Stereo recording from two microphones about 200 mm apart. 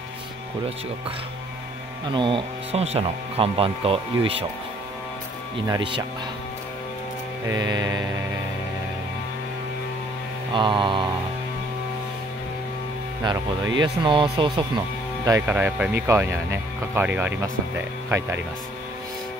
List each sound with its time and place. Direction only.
2.0 s speech: 25° right (ahead or behind)
5.7 s speech: 25° right (ahead or behind)
7.4 s speech: 20° right (ahead or behind)
10.5 s speech: 25° right (ahead or behind)
13.7 s speech: 25° right (ahead or behind)
15.2 s speech: 15° right (ahead or behind)